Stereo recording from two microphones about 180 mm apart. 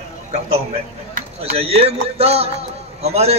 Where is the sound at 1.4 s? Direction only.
35° right (ahead or behind).